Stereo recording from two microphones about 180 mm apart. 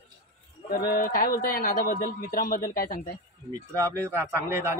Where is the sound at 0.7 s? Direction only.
55° left (ahead or behind).